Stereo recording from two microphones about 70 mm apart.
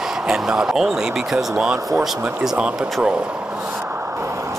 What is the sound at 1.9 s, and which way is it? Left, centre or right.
Speech, centre.